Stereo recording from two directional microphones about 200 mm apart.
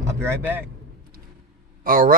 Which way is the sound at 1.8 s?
45° right (ahead or behind).